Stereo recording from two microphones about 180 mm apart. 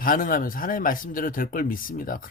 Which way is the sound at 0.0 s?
50° left (ahead or behind).